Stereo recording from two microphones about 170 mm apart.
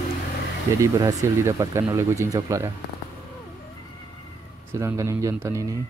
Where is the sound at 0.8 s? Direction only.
20° right (ahead or behind).